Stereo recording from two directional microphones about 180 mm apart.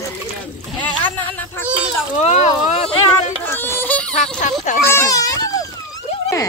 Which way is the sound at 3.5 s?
10° left (ahead or behind).